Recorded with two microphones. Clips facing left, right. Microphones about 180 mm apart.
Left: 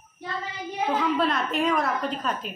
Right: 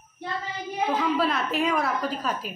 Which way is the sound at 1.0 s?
5° right (ahead or behind).